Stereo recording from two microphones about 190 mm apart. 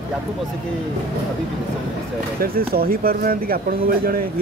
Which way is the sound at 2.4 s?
50° right (ahead or behind).